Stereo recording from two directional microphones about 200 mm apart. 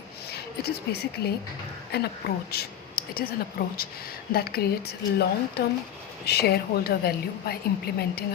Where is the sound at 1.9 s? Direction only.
55° left (ahead or behind).